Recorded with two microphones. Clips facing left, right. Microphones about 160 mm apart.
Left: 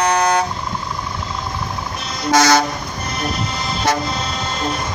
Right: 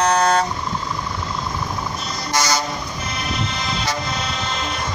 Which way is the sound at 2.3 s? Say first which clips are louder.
Left 8 dB; 55° left (ahead or behind).